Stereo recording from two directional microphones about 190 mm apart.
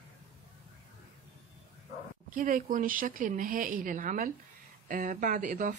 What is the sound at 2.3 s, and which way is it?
A woman's voice, 45° right (ahead or behind).